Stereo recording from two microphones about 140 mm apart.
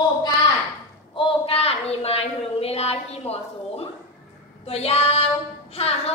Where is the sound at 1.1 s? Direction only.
40° left (ahead or behind).